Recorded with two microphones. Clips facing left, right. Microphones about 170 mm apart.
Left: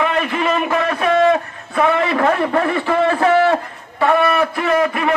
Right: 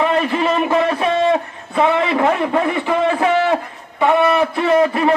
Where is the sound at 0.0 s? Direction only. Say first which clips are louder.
Right 2 dB; 30° right (ahead or behind); by 3.5 s 15° right (ahead or behind).